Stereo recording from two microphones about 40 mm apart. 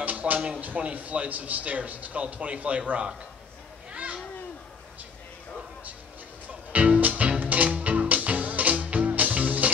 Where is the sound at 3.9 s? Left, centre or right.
Right.